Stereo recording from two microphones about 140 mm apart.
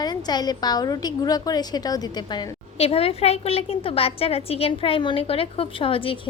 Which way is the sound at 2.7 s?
45° left (ahead or behind).